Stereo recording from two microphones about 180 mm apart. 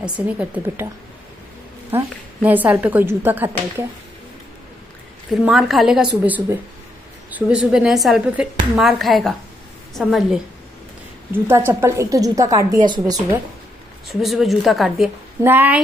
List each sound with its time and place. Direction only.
0.0 s a woman's voice: 10° right (ahead or behind)
1.9 s a woman's voice: 10° right (ahead or behind)
5.3 s a woman's voice: centre (ahead or behind)
11.3 s a woman's voice: 15° right (ahead or behind)
14.0 s a woman's voice: centre (ahead or behind)